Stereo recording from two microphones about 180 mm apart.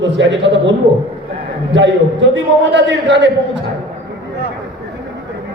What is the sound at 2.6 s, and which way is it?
Speech, 80° right.